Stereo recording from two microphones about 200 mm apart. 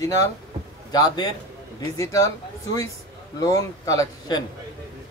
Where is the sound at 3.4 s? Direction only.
15° left (ahead or behind).